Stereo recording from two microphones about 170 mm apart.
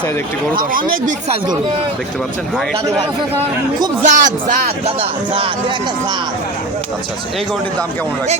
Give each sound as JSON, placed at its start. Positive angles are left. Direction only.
{"t": 0.5, "sound": "speech", "side_deg": -55}
{"t": 4.0, "sound": "speech", "side_deg": -50}
{"t": 4.9, "sound": "speech", "side_deg": -30}